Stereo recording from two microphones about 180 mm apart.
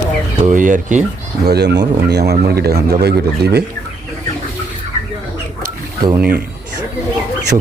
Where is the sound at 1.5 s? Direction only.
65° right (ahead or behind).